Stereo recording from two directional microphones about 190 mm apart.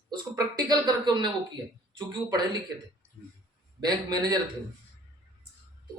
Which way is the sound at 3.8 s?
20° right (ahead or behind).